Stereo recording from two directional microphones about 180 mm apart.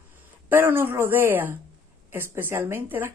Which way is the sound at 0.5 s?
10° right (ahead or behind).